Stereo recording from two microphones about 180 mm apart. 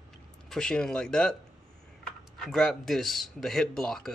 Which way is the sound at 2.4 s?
5° left (ahead or behind).